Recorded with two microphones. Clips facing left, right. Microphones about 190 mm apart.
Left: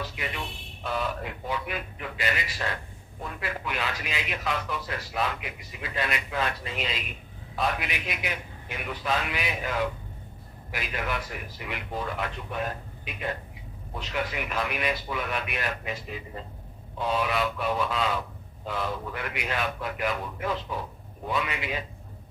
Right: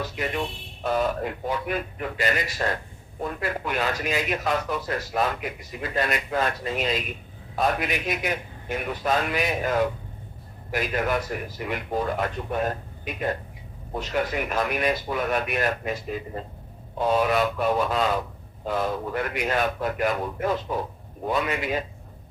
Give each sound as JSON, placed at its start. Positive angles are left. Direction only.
{"t": 0.0, "sound": "a man's voice", "side_deg": -45}